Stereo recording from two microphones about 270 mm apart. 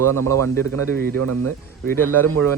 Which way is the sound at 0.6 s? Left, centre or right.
Right.